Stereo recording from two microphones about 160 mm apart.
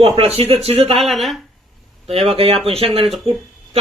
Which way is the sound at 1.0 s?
Centre (ahead or behind).